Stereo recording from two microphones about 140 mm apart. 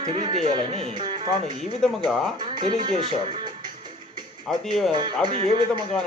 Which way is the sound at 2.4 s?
35° right (ahead or behind).